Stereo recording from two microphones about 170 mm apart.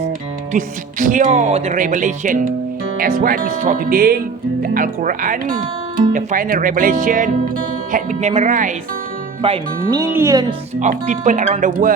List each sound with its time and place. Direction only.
0.5 s speech: 50° right (ahead or behind)
9.4 s speech: 35° right (ahead or behind)
10.0 s speech: 15° right (ahead or behind)
10.8 s speech: 45° right (ahead or behind)